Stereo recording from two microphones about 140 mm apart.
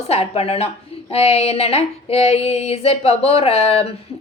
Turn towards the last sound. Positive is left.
turn(degrees=45)  # may be behind; listen again after turning